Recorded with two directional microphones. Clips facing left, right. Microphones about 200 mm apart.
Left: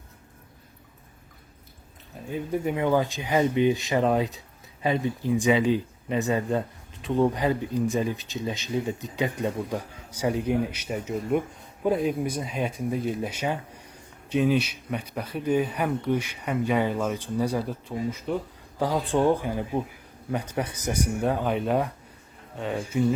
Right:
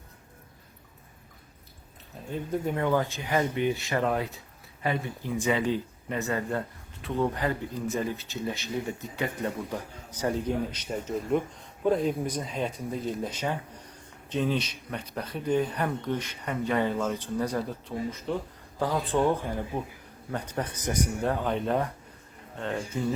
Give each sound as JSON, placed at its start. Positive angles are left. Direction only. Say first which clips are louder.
{"t": 2.3, "sound": "speech", "louder": "left 2 dB", "side_deg": 10}